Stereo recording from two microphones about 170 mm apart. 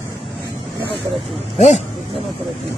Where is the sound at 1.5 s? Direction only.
40° left (ahead or behind).